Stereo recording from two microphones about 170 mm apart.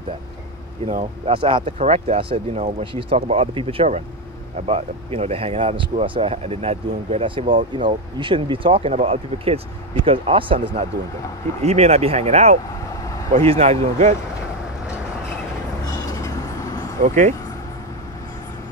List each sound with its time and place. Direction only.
0.8 s speech: 45° right (ahead or behind)
1.3 s speech: 30° right (ahead or behind)
11.6 s speech: 40° right (ahead or behind)
15.8 s vehicle: 20° left (ahead or behind)
17.0 s speech: 45° right (ahead or behind)